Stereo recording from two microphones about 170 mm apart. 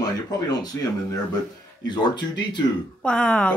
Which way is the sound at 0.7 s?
15° left (ahead or behind).